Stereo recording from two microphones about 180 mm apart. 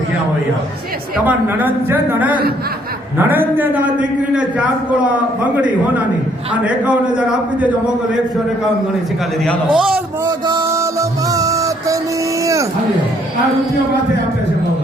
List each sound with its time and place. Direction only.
1.1 s a man's voice: 10° right (ahead or behind)
9.4 s a man's voice: centre (ahead or behind)
10.2 s music: 25° right (ahead or behind)
12.4 s a sound: 15° right (ahead or behind)